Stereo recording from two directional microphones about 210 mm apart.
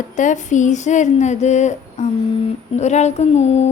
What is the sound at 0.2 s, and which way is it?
A woman's voice, 35° left (ahead or behind).